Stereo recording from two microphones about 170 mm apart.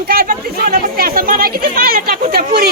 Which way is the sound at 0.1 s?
60° right (ahead or behind).